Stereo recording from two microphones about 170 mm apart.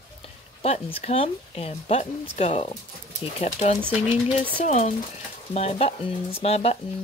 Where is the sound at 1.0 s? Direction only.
35° left (ahead or behind).